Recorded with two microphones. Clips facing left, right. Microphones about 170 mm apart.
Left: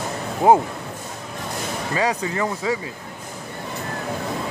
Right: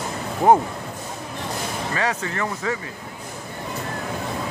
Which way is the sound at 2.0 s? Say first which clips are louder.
Left 4 dB; 15° left (ahead or behind).